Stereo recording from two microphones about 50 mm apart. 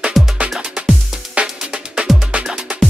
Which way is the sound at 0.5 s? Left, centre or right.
Right.